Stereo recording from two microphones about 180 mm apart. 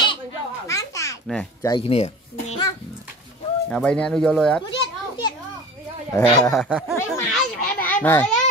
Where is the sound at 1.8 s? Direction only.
35° left (ahead or behind).